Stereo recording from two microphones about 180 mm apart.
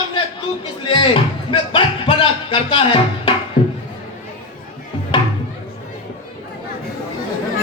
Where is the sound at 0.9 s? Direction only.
30° left (ahead or behind).